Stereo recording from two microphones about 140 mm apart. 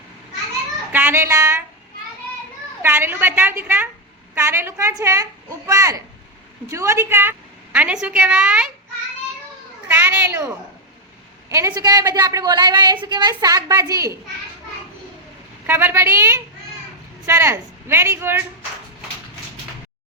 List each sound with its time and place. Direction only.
0.9 s a sound: 15° right (ahead or behind)
2.8 s a woman's voice: 15° right (ahead or behind)
9.9 s a woman's voice: 15° right (ahead or behind)
15.6 s speech: 15° right (ahead or behind)